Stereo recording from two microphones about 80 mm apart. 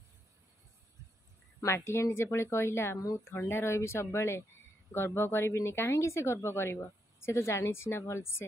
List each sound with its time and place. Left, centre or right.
1.9 s speech: left